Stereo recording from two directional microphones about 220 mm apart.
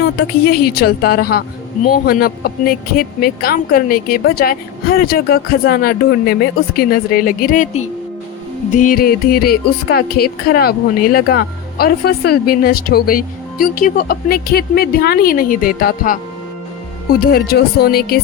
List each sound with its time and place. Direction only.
0.0 s a woman's voice: 45° left (ahead or behind)